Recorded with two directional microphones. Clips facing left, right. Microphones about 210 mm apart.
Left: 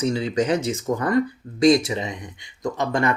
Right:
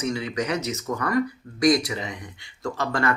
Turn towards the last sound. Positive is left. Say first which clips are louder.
# left 3 dB
turn(degrees=20)  # may be behind; listen again after turning